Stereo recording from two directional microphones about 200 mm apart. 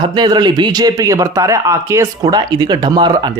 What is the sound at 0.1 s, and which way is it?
A man's voice, 20° right (ahead or behind).